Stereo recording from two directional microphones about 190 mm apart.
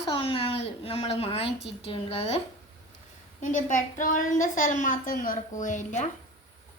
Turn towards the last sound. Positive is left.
turn(degrees=40)  # may be behind; listen again after turning